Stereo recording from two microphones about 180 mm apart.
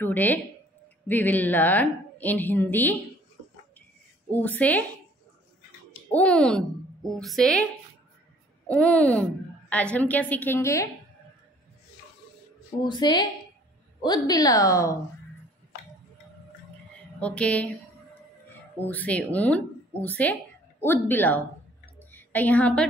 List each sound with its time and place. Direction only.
0.0 s a woman's voice: 10° left (ahead or behind)
4.3 s a woman's voice: 10° left (ahead or behind)
6.1 s a woman's voice: 5° left (ahead or behind)
8.6 s a woman's voice: 5° left (ahead or behind)
12.8 s a woman's voice: 25° left (ahead or behind)
17.2 s a woman's voice: 5° left (ahead or behind)
18.8 s a woman's voice: 10° left (ahead or behind)
21.8 s a sound: 10° left (ahead or behind)